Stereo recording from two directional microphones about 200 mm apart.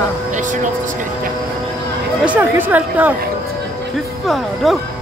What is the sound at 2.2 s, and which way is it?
Speech, 10° right (ahead or behind).